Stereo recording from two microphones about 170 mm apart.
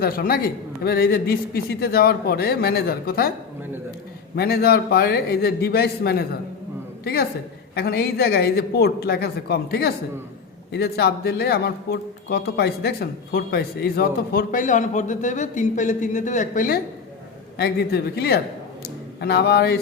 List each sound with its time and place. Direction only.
0.0 s a man's voice: 60° left (ahead or behind)
4.4 s a man's voice: 65° left (ahead or behind)
17.6 s a man's voice: 70° left (ahead or behind)